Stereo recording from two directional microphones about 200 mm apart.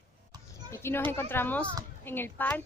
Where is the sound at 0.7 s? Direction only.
10° left (ahead or behind).